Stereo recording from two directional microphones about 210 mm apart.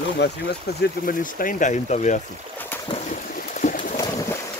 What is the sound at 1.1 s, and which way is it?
Speech, 40° left (ahead or behind).